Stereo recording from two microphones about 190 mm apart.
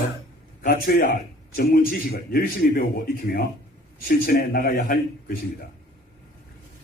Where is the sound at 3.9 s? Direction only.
50° left (ahead or behind).